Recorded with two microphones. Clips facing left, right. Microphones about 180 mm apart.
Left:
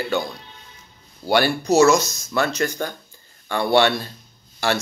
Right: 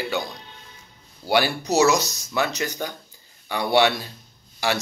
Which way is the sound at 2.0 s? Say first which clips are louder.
Left 2 dB; 15° right (ahead or behind).